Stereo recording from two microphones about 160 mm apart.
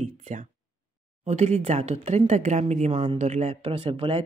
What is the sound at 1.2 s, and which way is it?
Speech, 45° right (ahead or behind).